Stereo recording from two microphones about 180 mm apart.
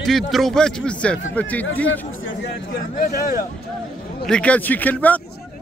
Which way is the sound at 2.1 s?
90° left.